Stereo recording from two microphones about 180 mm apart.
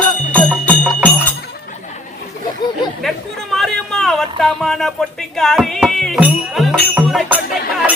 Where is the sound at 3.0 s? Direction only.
Centre (ahead or behind).